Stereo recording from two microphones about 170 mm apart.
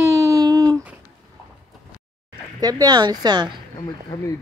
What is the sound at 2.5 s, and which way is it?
Speech, 20° right (ahead or behind).